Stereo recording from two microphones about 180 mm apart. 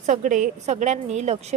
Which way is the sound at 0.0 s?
45° right (ahead or behind).